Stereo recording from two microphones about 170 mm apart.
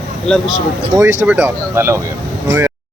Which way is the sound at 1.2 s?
10° right (ahead or behind).